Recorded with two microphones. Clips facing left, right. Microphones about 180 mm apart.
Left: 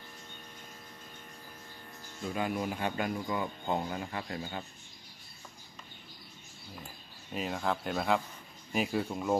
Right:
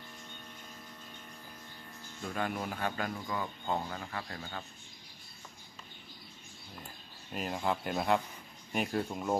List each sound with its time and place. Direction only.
2.2 s speech: 10° left (ahead or behind)
7.3 s speech: centre (ahead or behind)